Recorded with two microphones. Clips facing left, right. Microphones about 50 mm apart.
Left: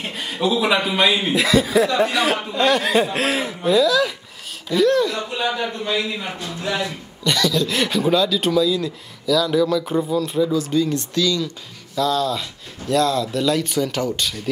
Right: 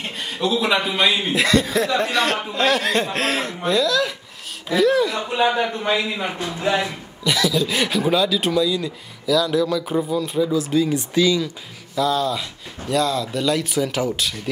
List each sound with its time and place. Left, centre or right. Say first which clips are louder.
0.0 s speech: left 2 dB; centre
5.3 s a man's voice: right 4 dB; right
7.2 s speech: even; centre